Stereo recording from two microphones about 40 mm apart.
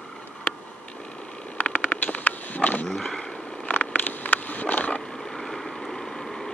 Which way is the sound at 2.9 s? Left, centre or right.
Centre.